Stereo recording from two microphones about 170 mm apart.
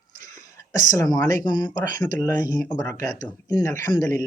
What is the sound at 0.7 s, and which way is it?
Speech, 20° left (ahead or behind).